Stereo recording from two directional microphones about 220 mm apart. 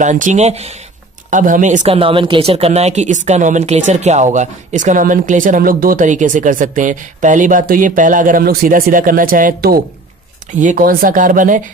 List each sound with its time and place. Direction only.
0.0 s speech: 35° right (ahead or behind)